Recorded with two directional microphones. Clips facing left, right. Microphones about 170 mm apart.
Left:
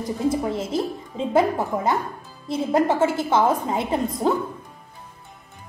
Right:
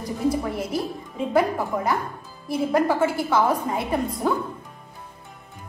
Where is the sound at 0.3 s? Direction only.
25° left (ahead or behind).